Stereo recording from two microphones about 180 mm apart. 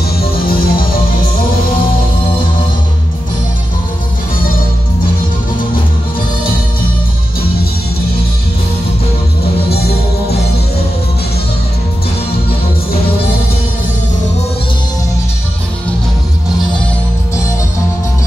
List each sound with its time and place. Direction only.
0.2 s music: 55° left (ahead or behind)